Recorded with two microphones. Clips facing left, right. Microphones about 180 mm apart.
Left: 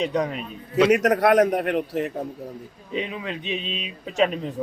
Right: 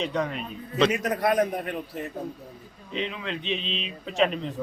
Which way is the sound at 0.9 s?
70° left (ahead or behind).